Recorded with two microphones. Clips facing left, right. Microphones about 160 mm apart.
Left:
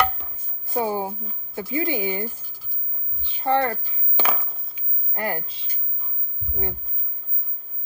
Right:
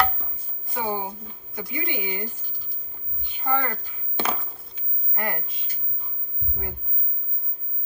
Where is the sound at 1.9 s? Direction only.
35° left (ahead or behind).